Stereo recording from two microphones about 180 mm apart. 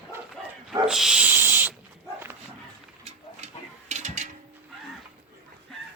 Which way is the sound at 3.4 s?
40° right (ahead or behind).